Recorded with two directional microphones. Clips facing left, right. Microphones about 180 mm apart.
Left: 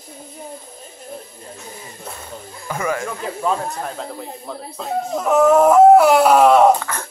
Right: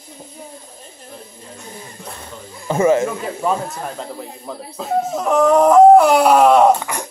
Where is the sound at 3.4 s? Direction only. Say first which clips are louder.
Right 1 dB; 5° right (ahead or behind).